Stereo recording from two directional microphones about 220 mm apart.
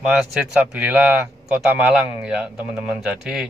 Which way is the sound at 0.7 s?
5° right (ahead or behind).